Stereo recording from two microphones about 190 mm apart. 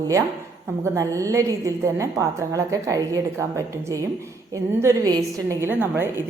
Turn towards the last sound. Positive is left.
turn(degrees=-10)  # may be behind; listen again after turning